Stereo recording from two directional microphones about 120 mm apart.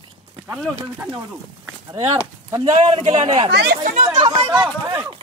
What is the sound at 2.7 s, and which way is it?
Speech, 70° right (ahead or behind).